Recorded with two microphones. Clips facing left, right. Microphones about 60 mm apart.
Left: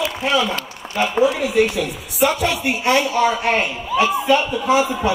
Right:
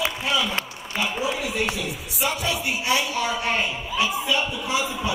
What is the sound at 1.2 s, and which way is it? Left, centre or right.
A man's voice, left.